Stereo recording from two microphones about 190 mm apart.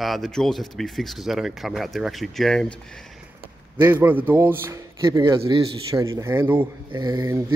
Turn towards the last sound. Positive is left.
turn(degrees=-15)  # may be behind; listen again after turning